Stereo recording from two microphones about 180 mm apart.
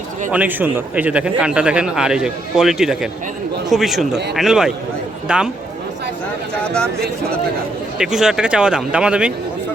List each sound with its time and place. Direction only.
0.3 s a man's voice: 10° right (ahead or behind)
7.9 s a man's voice: 5° right (ahead or behind)